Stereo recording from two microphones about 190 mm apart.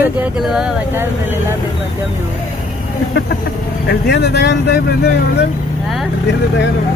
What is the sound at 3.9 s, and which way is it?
Speech, 60° left (ahead or behind).